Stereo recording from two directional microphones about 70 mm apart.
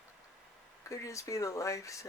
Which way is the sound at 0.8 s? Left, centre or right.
Left.